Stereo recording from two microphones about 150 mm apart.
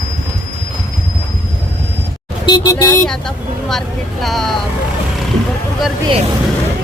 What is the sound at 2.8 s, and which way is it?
Speech, 10° left (ahead or behind).